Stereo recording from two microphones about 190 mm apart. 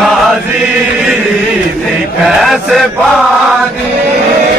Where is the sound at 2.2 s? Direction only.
Centre (ahead or behind).